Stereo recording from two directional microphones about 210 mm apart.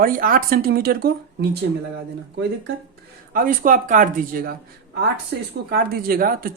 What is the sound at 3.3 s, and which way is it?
Speech, 40° right (ahead or behind).